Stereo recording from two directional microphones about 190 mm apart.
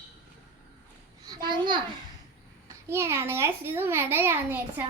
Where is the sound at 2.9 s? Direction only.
15° right (ahead or behind).